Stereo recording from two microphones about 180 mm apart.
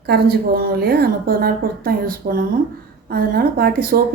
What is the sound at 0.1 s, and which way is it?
A woman's voice, 55° right (ahead or behind).